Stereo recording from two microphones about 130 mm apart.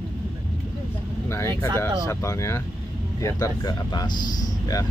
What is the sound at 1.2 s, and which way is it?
Speech, 20° left (ahead or behind).